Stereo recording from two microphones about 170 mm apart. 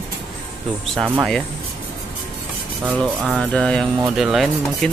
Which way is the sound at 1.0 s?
10° right (ahead or behind).